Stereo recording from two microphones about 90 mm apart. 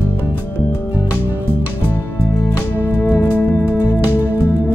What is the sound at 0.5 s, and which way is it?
Music, 25° left (ahead or behind).